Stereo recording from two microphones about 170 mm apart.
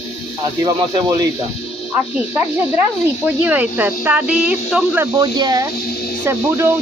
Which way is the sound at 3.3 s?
10° right (ahead or behind).